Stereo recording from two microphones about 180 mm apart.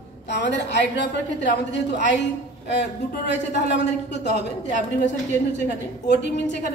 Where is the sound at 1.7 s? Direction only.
75° left (ahead or behind).